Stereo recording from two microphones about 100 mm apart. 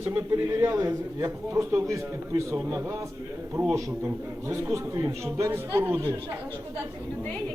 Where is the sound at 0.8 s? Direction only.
35° right (ahead or behind).